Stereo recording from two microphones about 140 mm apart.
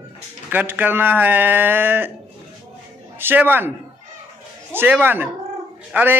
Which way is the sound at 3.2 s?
15° right (ahead or behind).